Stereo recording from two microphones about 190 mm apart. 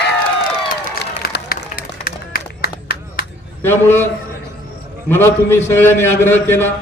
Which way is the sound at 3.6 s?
10° left (ahead or behind).